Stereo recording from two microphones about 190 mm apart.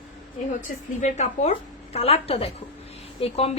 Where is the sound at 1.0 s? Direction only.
35° left (ahead or behind).